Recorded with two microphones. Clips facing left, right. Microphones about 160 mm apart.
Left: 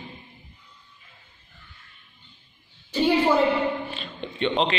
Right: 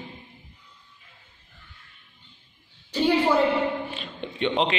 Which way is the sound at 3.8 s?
15° right (ahead or behind).